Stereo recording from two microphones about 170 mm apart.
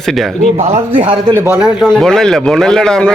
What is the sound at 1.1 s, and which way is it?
Speech, 15° right (ahead or behind).